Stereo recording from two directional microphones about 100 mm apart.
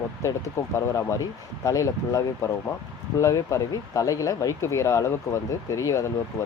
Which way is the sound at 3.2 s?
35° left (ahead or behind).